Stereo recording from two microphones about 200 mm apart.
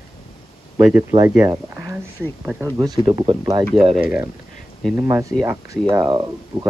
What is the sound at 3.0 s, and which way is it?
Speech, 20° right (ahead or behind).